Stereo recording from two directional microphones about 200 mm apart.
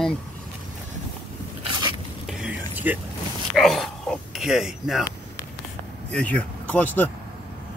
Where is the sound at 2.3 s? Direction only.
5° right (ahead or behind).